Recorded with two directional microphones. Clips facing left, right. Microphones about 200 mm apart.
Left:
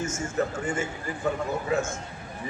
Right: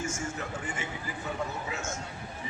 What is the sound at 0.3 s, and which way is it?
A man's voice, 45° left (ahead or behind).